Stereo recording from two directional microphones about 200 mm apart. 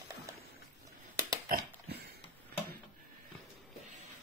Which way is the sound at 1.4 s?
45° right (ahead or behind).